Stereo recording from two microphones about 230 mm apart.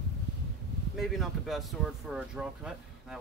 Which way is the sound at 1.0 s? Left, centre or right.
Centre.